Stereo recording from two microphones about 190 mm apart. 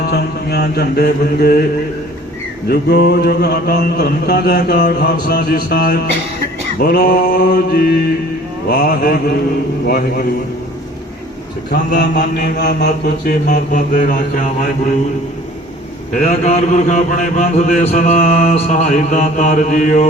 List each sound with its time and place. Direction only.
0.1 s mantra: 55° left (ahead or behind)
2.6 s mantra: 55° left (ahead or behind)
11.7 s mantra: 50° left (ahead or behind)
12.4 s mantra: 60° left (ahead or behind)
13.5 s mantra: 45° left (ahead or behind)
16.1 s mantra: 40° left (ahead or behind)